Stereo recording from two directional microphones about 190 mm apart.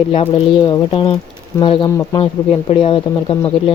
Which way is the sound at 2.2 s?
30° left (ahead or behind).